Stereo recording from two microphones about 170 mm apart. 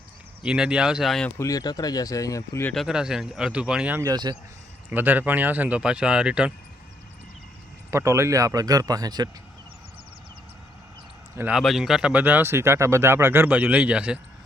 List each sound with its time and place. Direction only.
0.4 s speech: 5° right (ahead or behind)
1.4 s speech: 20° left (ahead or behind)
2.6 s speech: centre (ahead or behind)
4.0 s speech: 25° right (ahead or behind)
4.9 s speech: 10° right (ahead or behind)
7.9 s speech: 15° right (ahead or behind)
11.3 s speech: 10° right (ahead or behind)